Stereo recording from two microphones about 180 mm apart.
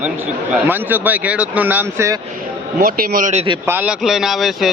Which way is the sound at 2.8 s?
50° right (ahead or behind).